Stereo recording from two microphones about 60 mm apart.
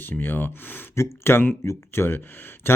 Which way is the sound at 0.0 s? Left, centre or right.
Left.